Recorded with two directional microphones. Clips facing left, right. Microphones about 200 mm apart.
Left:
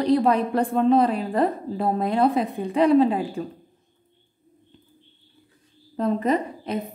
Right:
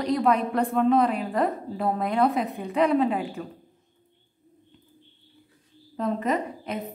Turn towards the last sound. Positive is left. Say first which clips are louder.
# left 4 dB
turn(degrees=35)  # may be behind; listen again after turning